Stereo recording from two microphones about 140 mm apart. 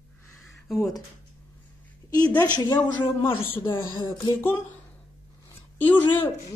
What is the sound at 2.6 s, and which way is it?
Speech, 30° left (ahead or behind).